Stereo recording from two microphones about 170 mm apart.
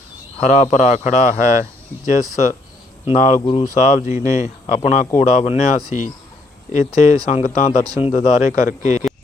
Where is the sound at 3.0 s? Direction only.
45° left (ahead or behind).